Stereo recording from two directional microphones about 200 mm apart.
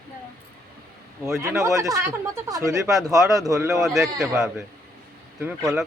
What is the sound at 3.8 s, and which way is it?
Speech, centre (ahead or behind).